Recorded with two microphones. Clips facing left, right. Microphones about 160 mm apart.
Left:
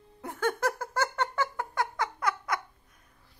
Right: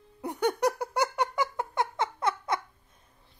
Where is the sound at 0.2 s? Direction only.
15° right (ahead or behind).